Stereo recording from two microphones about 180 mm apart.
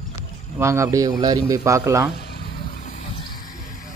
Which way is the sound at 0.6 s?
15° right (ahead or behind).